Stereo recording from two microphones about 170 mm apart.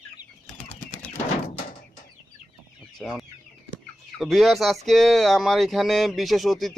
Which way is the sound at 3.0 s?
Centre (ahead or behind).